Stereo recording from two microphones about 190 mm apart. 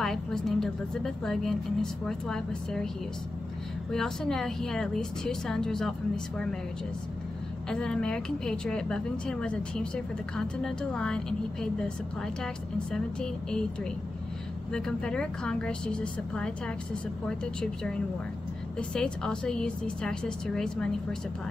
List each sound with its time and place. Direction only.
0.0 s speech: centre (ahead or behind)
3.9 s speech: 5° left (ahead or behind)
7.7 s speech: 5° left (ahead or behind)
14.7 s speech: 5° left (ahead or behind)
18.8 s speech: 5° left (ahead or behind)